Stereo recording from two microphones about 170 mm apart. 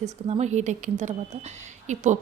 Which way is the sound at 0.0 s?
40° right (ahead or behind).